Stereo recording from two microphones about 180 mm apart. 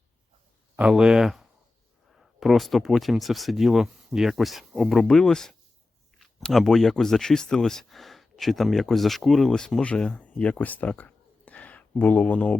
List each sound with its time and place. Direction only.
0.8 s speech: 5° right (ahead or behind)